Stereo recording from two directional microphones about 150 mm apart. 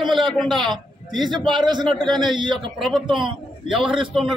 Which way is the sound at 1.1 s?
30° right (ahead or behind).